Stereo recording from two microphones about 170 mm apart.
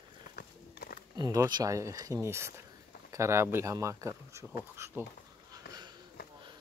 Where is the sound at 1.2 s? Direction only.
20° right (ahead or behind).